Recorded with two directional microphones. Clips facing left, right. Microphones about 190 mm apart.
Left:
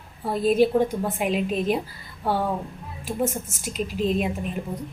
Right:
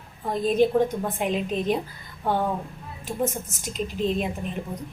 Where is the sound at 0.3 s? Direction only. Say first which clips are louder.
Left 2 dB; 10° left (ahead or behind).